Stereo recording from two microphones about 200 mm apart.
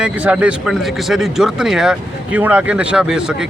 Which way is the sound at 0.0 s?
5° right (ahead or behind).